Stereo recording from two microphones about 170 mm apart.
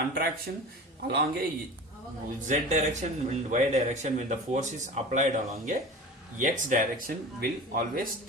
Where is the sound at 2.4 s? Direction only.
45° right (ahead or behind).